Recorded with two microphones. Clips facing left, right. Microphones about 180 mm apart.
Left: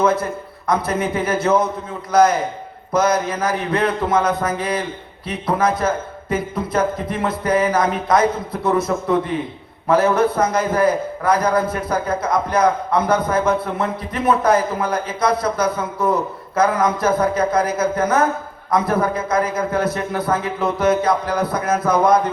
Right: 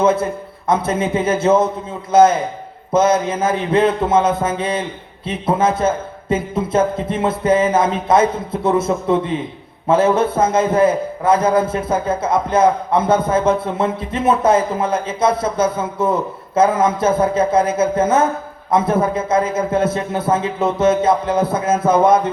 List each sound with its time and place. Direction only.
0.0 s a man's voice: 25° right (ahead or behind)